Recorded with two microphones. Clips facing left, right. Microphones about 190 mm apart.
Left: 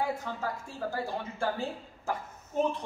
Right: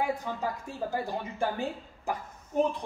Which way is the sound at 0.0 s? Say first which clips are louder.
Right 2 dB; 15° right (ahead or behind).